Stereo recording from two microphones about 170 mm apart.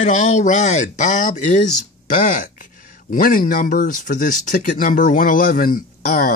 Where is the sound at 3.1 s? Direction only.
55° left (ahead or behind).